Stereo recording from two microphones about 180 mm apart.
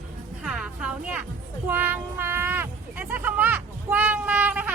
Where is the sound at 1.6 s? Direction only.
10° right (ahead or behind).